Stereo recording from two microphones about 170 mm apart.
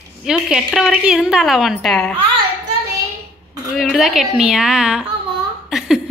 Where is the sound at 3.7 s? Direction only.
Centre (ahead or behind).